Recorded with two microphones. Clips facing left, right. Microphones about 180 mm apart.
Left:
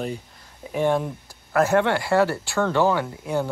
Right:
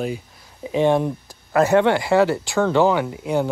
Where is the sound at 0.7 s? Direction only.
20° right (ahead or behind).